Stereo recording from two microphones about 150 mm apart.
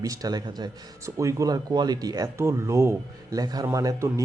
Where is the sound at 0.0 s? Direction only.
25° right (ahead or behind).